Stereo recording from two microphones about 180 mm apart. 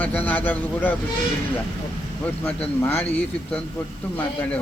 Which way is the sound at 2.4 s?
10° left (ahead or behind).